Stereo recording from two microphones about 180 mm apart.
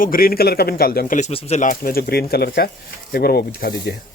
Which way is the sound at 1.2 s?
35° left (ahead or behind).